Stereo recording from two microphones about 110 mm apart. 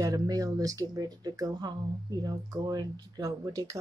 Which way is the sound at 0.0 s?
35° right (ahead or behind).